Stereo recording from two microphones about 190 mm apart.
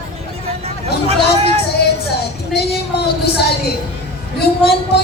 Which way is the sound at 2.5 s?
55° left (ahead or behind).